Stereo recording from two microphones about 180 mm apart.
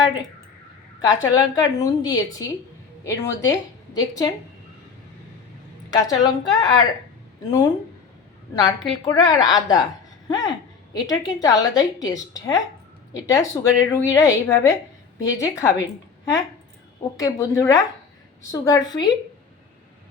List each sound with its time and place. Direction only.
1.0 s a woman's voice: 20° left (ahead or behind)
5.9 s a woman's voice: 20° left (ahead or behind)
17.2 s a woman's voice: 20° left (ahead or behind)